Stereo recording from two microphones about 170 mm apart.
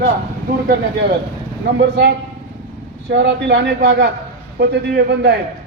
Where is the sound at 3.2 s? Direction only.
90° right.